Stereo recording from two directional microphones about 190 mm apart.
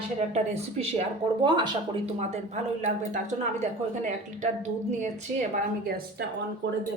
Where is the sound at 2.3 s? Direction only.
40° right (ahead or behind).